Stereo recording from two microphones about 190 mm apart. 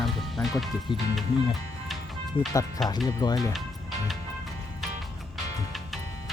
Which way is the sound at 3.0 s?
20° left (ahead or behind).